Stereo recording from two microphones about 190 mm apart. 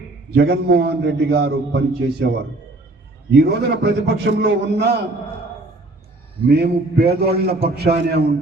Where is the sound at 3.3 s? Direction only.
60° right (ahead or behind).